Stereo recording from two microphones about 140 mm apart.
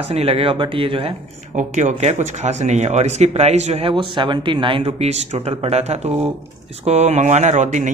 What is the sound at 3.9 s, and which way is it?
Speech, 35° right (ahead or behind).